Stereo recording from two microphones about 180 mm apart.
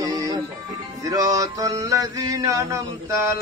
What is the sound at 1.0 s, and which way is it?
A man's voice, 20° right (ahead or behind).